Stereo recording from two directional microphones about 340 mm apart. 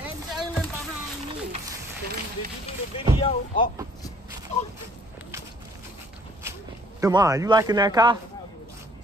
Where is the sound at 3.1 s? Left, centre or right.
Centre.